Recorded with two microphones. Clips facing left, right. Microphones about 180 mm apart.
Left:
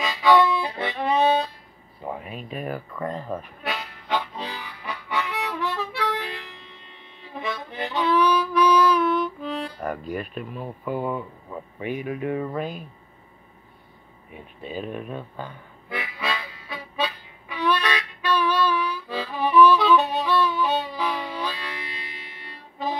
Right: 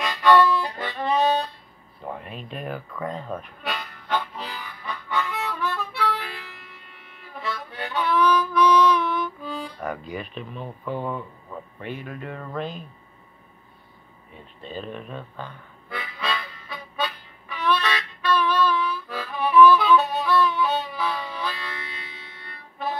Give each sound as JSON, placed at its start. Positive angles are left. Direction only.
{"t": 0.0, "sound": "harmonica", "side_deg": 10}
{"t": 2.0, "sound": "a sound", "side_deg": 5}
{"t": 11.8, "sound": "speech", "side_deg": 10}
{"t": 14.3, "sound": "music", "side_deg": 10}